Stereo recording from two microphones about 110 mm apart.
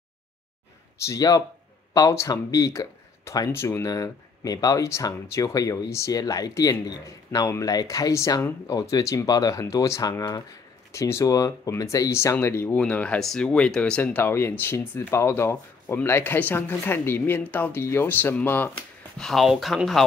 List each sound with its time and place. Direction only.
0.9 s speech: 25° left (ahead or behind); by 14.2 s 10° left (ahead or behind)
14.2 s speech: 20° left (ahead or behind)
19.1 s speech: 5° left (ahead or behind)